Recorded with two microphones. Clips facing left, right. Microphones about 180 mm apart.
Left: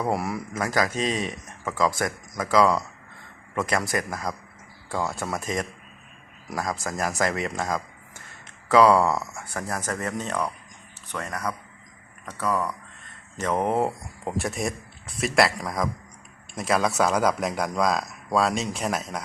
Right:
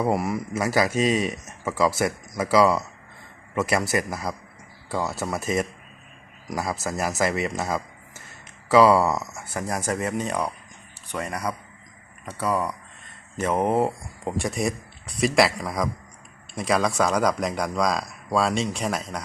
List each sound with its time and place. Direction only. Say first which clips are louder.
0.0 s speech: right 3 dB; centre (ahead or behind)
9.0 s speech: even; 15° right (ahead or behind); by 19.2 s 5° left (ahead or behind)